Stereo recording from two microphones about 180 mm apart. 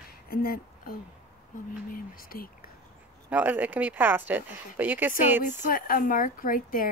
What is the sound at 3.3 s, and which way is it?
Speech, 10° right (ahead or behind).